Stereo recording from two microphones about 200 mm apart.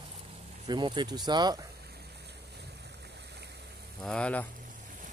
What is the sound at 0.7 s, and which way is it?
Speech, 20° right (ahead or behind).